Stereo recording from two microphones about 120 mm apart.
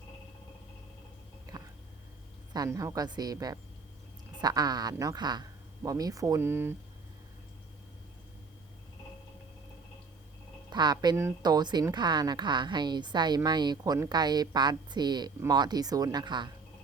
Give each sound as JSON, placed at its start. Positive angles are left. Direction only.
{"t": 2.6, "sound": "a woman's voice", "side_deg": -25}
{"t": 10.7, "sound": "a woman's voice", "side_deg": -35}